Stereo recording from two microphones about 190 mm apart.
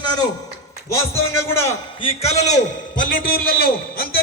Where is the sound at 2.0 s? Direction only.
30° left (ahead or behind).